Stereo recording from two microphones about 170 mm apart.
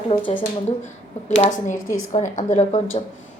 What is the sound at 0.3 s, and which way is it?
Speech, 40° left (ahead or behind).